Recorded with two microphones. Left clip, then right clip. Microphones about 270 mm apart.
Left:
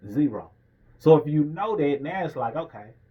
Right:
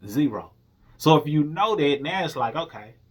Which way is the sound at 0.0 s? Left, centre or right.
Centre.